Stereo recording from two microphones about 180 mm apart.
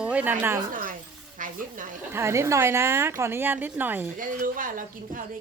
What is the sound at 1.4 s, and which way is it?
Speech, 50° right (ahead or behind).